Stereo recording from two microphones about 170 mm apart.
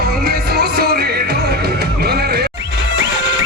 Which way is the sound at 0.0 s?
65° right (ahead or behind).